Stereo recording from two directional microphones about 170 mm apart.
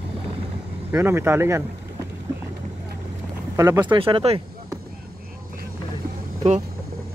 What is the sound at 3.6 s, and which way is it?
Speech, 15° right (ahead or behind).